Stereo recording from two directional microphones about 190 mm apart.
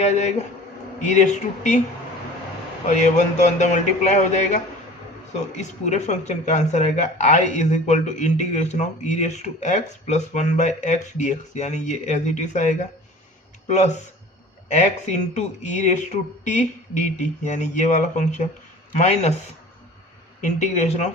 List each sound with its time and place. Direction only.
0.0 s speech: 35° left (ahead or behind)
2.8 s speech: 40° left (ahead or behind)
20.4 s speech: 40° left (ahead or behind)